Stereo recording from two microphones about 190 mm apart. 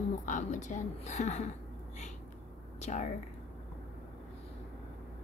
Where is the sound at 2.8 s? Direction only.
40° left (ahead or behind).